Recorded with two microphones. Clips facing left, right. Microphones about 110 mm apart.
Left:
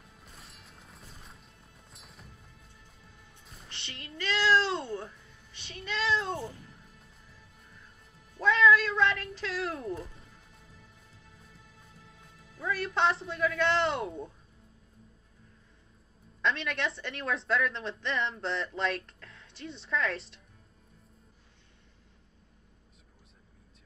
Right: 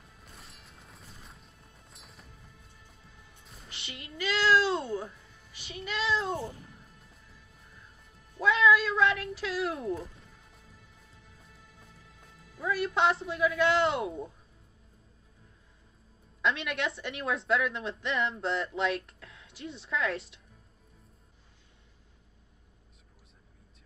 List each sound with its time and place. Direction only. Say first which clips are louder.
0.2 s music: right 1 dB; centre (ahead or behind)
3.4 s music: right 1 dB; 5° right (ahead or behind)
8.4 s music: even; 5° right (ahead or behind)
12.5 s a woman's voice: right 2 dB; 5° right (ahead or behind)
16.3 s a woman's voice: right 1 dB; 5° right (ahead or behind)